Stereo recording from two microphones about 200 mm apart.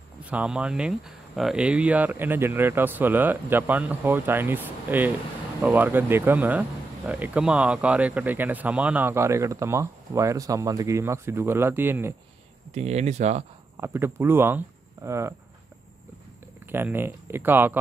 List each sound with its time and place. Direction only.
0.2 s speech: 5° right (ahead or behind)
12.7 s speech: 35° right (ahead or behind)
13.7 s speech: 10° right (ahead or behind)
16.6 s speech: 10° right (ahead or behind)